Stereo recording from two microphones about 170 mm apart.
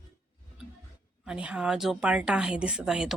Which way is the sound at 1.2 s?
5° right (ahead or behind).